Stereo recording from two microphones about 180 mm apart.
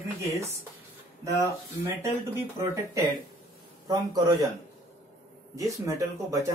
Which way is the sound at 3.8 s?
20° right (ahead or behind).